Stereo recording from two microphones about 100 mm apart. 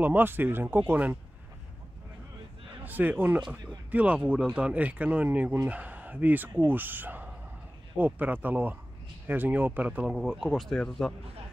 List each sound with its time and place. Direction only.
0.0 s speech: 20° right (ahead or behind)
2.8 s speech: 20° right (ahead or behind)
10.1 s speech: centre (ahead or behind)